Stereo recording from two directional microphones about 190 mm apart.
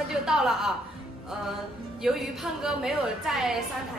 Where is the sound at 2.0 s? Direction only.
Centre (ahead or behind).